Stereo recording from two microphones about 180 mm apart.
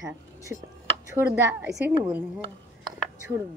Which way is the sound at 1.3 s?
10° right (ahead or behind).